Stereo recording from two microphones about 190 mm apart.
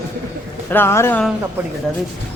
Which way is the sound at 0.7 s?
10° left (ahead or behind).